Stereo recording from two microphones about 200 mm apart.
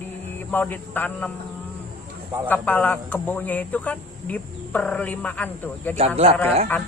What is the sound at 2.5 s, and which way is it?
Speech, 10° left (ahead or behind).